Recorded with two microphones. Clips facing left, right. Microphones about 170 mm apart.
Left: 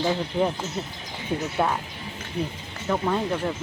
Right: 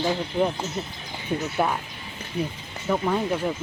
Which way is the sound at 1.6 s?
5° right (ahead or behind).